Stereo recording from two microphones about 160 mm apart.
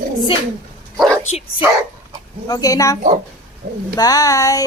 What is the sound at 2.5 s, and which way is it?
Speech, 20° left (ahead or behind).